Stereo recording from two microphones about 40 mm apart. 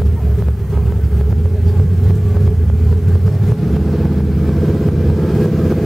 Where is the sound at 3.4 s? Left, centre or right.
Centre.